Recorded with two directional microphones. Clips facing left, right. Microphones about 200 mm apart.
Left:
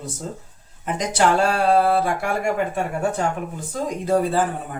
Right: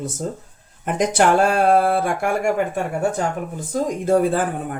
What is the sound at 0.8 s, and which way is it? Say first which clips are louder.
Speech: right 3 dB; 55° right (ahead or behind).